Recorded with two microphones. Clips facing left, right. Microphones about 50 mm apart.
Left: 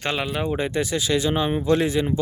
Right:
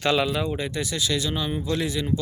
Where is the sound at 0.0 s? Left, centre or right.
Left.